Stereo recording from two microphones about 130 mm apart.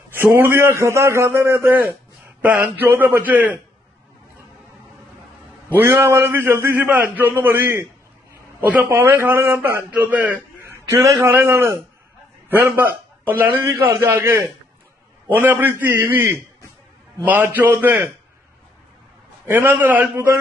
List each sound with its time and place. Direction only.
0.1 s a man's voice: 15° right (ahead or behind)
5.7 s a man's voice: 20° right (ahead or behind)
8.9 s a man's voice: 15° right (ahead or behind)
19.4 s a man's voice: 15° right (ahead or behind)